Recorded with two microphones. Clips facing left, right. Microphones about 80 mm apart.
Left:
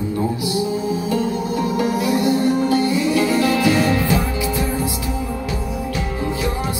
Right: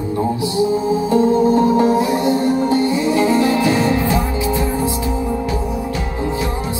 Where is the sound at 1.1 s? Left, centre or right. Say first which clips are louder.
Right 11 dB; right.